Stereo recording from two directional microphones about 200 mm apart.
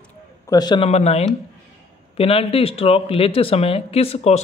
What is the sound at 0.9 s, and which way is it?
A man's voice, 30° left (ahead or behind).